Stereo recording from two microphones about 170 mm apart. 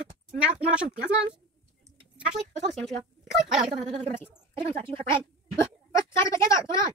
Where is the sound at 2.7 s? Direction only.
Centre (ahead or behind).